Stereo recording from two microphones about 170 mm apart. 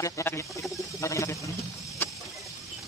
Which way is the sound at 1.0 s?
20° left (ahead or behind).